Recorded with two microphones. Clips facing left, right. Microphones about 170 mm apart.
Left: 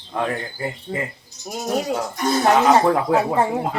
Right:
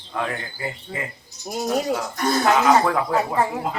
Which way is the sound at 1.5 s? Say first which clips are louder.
Right 2 dB; 25° right (ahead or behind).